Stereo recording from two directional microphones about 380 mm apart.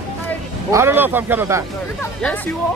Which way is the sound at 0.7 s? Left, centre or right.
Centre.